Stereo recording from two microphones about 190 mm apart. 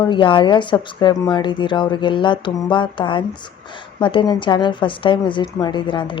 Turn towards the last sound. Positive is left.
turn(degrees=25)  # may be behind; listen again after turning